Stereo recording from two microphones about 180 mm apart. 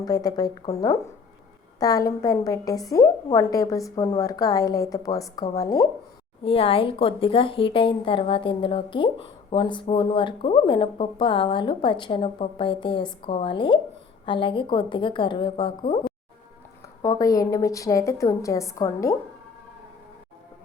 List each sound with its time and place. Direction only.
0.0 s a woman's voice: 20° left (ahead or behind)
6.4 s a woman's voice: 30° left (ahead or behind)
17.0 s a woman's voice: 20° left (ahead or behind)